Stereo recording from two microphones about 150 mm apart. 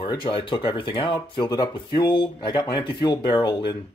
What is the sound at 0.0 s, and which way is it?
Speech, 30° left (ahead or behind).